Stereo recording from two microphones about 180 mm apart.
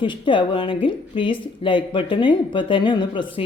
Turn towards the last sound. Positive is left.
turn(degrees=25)  # may be behind; listen again after turning